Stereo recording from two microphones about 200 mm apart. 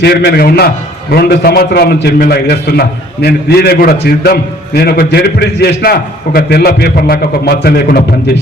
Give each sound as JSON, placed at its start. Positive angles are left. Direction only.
{"t": 0.0, "sound": "a man's voice", "side_deg": 55}